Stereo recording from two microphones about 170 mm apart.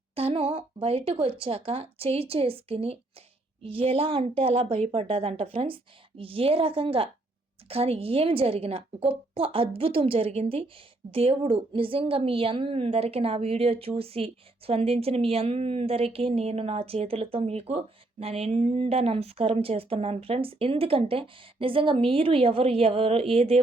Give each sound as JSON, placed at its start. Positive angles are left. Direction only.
{"t": 0.2, "sound": "a woman's voice", "side_deg": -35}